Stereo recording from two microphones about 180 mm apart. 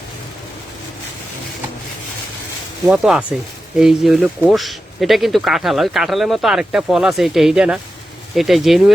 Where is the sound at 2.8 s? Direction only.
5° right (ahead or behind).